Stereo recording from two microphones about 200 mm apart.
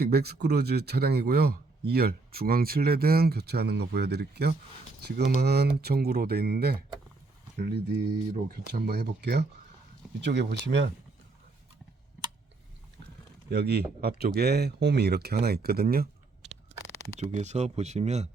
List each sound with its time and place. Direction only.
0.0 s speech: 50° right (ahead or behind)
13.5 s speech: 55° right (ahead or behind)
17.2 s speech: 35° right (ahead or behind)